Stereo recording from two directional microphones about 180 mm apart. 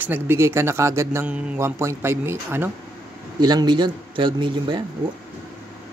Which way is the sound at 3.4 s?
25° right (ahead or behind).